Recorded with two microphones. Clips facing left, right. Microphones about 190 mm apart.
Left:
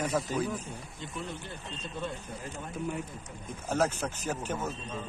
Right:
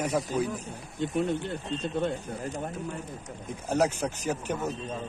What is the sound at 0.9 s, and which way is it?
Speech, 55° right (ahead or behind).